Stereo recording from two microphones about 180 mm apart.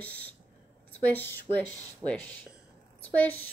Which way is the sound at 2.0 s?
25° right (ahead or behind).